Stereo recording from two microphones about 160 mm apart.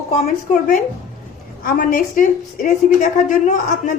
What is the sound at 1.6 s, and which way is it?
A woman's voice, 60° left (ahead or behind).